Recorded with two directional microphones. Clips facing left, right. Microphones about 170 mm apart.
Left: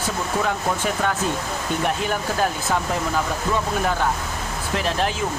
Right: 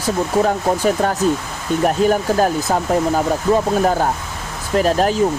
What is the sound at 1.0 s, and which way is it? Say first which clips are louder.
Speech: right 6 dB; 40° right (ahead or behind).